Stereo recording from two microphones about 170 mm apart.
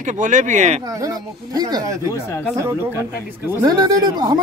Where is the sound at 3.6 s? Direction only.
25° right (ahead or behind).